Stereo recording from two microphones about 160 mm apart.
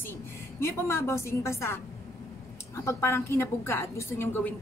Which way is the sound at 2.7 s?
15° left (ahead or behind).